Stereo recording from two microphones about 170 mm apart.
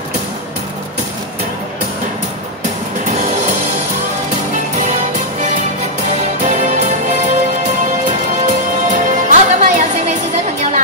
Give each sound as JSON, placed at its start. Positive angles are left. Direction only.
{"t": 6.4, "sound": "music", "side_deg": -45}
{"t": 8.5, "sound": "music", "side_deg": -45}